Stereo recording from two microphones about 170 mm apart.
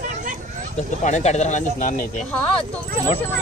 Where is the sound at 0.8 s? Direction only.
45° left (ahead or behind).